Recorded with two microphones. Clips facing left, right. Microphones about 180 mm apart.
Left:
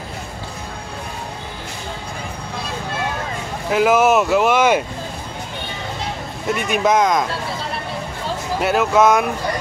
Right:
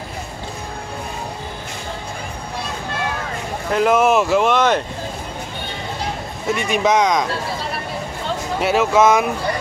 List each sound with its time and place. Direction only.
3.7 s speech: 5° left (ahead or behind)
6.4 s speech: centre (ahead or behind)
8.5 s speech: centre (ahead or behind)